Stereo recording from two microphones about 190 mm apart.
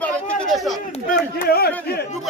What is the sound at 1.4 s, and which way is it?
Speech, 55° left (ahead or behind).